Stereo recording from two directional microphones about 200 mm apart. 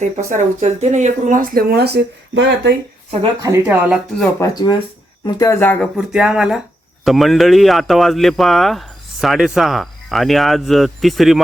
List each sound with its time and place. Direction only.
0.3 s speech: 35° right (ahead or behind); by 2.7 s 65° right (ahead or behind)
3.4 s speech: 10° right (ahead or behind)
4.4 s speech: 20° left (ahead or behind); by 11.3 s centre (ahead or behind)